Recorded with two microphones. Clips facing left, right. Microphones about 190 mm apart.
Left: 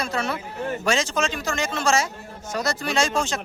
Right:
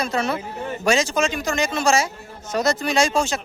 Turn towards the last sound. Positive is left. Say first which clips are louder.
# right 3 dB
turn(degrees=-15)  # may be behind; listen again after turning